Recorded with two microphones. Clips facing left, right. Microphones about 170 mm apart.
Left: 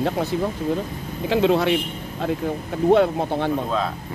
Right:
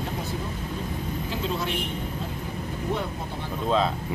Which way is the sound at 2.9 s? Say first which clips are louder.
Left 15 dB; 80° left.